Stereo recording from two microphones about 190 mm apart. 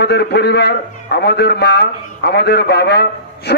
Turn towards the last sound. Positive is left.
turn(degrees=60)  # may be behind; listen again after turning